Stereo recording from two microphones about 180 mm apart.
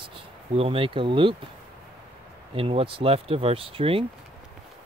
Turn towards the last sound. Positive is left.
turn(degrees=-30)  # may be behind; listen again after turning